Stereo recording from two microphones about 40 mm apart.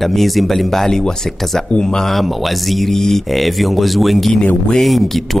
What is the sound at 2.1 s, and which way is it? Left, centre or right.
Speech, centre.